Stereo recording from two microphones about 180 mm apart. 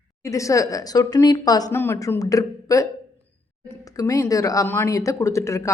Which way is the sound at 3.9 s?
20° left (ahead or behind).